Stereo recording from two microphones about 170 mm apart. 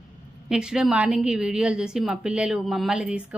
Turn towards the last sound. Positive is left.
turn(degrees=-5)  # may be behind; listen again after turning